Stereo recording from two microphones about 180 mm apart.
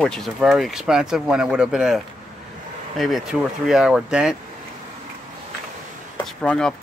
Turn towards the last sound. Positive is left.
turn(degrees=5)  # may be behind; listen again after turning